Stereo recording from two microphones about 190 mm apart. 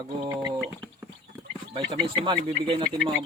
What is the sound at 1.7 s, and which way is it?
Speech, 25° right (ahead or behind).